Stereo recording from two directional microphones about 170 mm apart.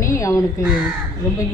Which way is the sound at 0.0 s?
20° left (ahead or behind).